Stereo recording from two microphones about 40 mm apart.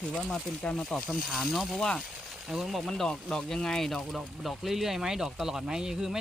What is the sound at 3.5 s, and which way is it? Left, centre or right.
Speech, centre.